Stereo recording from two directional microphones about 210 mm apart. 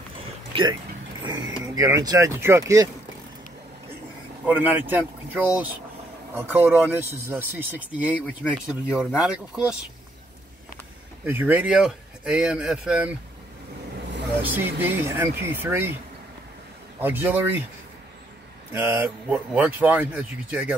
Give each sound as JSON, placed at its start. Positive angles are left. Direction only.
{"t": 0.5, "sound": "a sound", "side_deg": -25}
{"t": 1.2, "sound": "speech", "side_deg": -15}
{"t": 4.6, "sound": "speech", "side_deg": -10}
{"t": 11.2, "sound": "speech", "side_deg": -10}
{"t": 14.4, "sound": "speech", "side_deg": -10}
{"t": 17.0, "sound": "speech", "side_deg": -10}
{"t": 18.7, "sound": "speech", "side_deg": -10}